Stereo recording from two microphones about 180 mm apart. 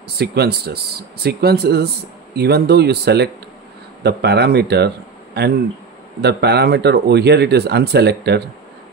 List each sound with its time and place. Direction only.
0.2 s a man's voice: 60° right (ahead or behind)